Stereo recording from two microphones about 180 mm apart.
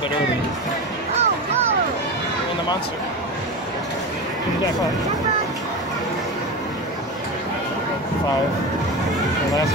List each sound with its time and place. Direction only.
1.1 s music: 35° right (ahead or behind)